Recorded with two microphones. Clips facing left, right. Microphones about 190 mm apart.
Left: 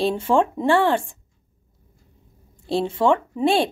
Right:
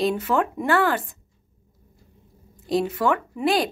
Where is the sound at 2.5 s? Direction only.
30° left (ahead or behind).